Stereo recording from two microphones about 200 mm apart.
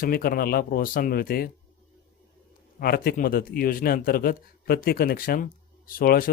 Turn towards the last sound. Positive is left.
turn(degrees=45)  # may be behind; listen again after turning